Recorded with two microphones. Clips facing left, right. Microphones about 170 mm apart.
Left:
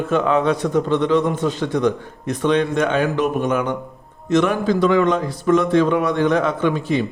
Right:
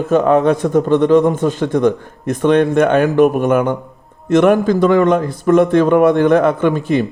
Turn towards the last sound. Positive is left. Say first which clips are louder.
# right 4 dB
turn(degrees=-50)  # may be behind; listen again after turning